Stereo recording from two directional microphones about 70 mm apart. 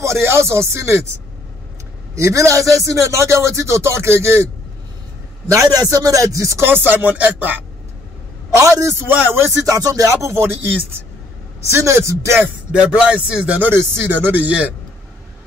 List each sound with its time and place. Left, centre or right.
0.0 s speech: right
2.1 s a man's voice: right
5.5 s a man's voice: right
6.6 s speech: right
8.5 s a man's voice: right
9.7 s a man's voice: right
10.4 s speech: right
11.7 s a man's voice: right
12.7 s music: centre
13.6 s speech: right